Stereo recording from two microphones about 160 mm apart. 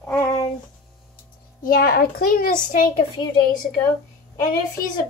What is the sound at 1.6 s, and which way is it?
A child's voice, 65° left (ahead or behind).